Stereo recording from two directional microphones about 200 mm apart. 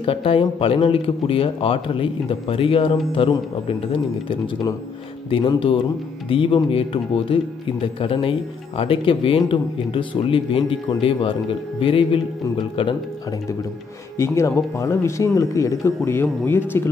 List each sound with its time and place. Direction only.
0.0 s speech: 30° left (ahead or behind)
14.1 s speech: 15° left (ahead or behind)